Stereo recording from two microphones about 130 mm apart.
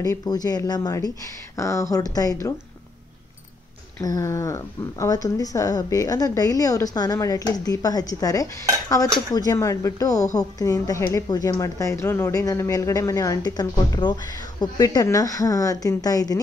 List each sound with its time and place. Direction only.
0.0 s speech: 30° left (ahead or behind)
4.0 s speech: 25° left (ahead or behind)